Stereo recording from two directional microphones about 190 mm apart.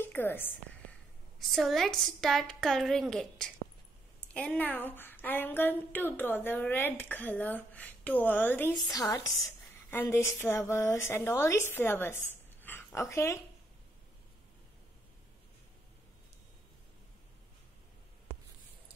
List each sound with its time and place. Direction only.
0.0 s a woman's voice: 10° left (ahead or behind)
1.5 s a woman's voice: centre (ahead or behind)